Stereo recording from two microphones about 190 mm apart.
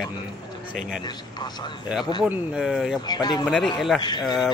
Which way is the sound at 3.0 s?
20° left (ahead or behind).